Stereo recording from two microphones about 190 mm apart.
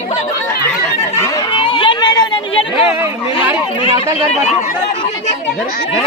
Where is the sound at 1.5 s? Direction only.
25° left (ahead or behind).